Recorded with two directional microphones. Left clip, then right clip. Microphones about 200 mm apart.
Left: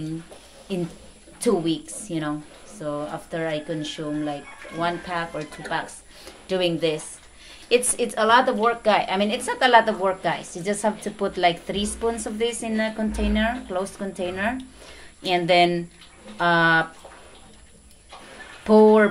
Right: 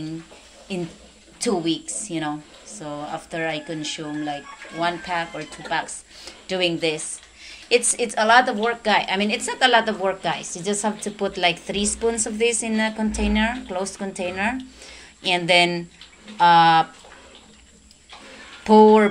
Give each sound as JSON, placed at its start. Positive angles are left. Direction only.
{"t": 1.4, "sound": "speech", "side_deg": 15}
{"t": 18.6, "sound": "speech", "side_deg": 10}